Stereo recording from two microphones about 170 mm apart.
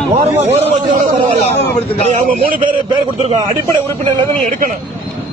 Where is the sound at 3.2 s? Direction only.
30° right (ahead or behind).